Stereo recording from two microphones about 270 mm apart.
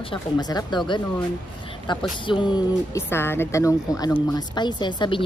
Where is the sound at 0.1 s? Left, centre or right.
Centre.